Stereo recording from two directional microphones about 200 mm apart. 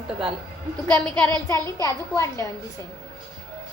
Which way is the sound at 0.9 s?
10° left (ahead or behind).